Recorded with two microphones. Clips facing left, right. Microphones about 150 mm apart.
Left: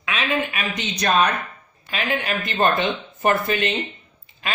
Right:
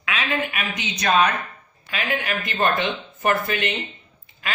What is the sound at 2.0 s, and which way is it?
Speech, 30° left (ahead or behind).